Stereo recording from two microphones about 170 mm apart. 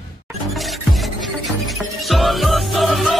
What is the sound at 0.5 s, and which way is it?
Music, centre (ahead or behind).